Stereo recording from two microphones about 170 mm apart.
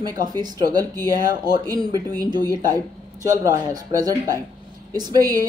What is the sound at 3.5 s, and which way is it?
Speech, 20° right (ahead or behind).